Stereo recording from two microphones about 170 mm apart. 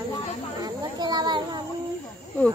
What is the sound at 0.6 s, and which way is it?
Children playing, 25° right (ahead or behind).